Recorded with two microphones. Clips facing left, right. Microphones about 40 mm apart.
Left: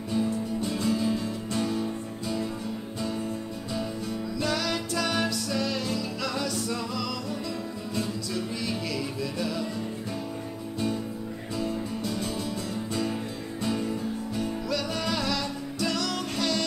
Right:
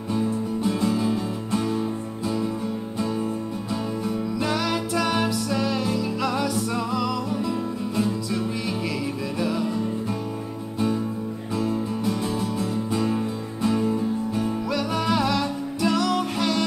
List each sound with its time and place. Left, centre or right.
0.1 s music: centre
4.4 s music: centre
11.6 s music: centre